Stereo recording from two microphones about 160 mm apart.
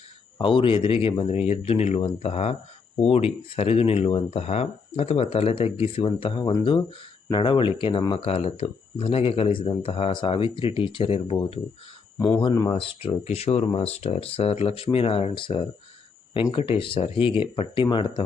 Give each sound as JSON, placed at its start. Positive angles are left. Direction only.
{"t": 0.3, "sound": "speech", "side_deg": 30}
{"t": 12.4, "sound": "speech", "side_deg": 25}